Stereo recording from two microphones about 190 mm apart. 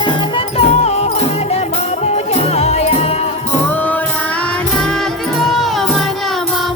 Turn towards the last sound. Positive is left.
turn(degrees=0)  # may be behind; listen again after turning